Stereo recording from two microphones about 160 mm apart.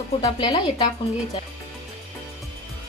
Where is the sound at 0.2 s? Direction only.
25° left (ahead or behind).